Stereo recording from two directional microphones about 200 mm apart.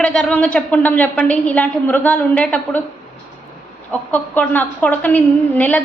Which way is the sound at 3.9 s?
5° left (ahead or behind).